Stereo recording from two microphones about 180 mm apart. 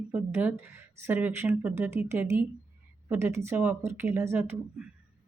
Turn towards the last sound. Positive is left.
turn(degrees=-10)  # may be behind; listen again after turning